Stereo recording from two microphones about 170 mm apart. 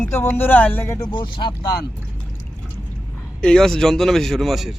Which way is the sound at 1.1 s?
30° left (ahead or behind).